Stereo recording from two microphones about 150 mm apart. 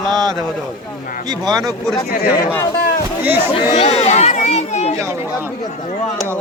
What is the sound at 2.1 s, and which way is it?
Speech, 70° left (ahead or behind).